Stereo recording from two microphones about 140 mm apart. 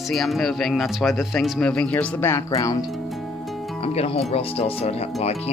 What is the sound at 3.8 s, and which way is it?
Speech, 45° left (ahead or behind).